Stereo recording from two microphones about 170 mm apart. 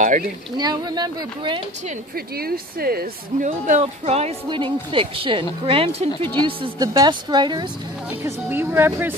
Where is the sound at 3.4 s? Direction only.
45° right (ahead or behind); by 7.7 s 25° right (ahead or behind).